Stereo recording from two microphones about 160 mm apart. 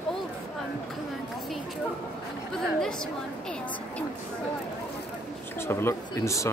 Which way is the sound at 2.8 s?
5° left (ahead or behind).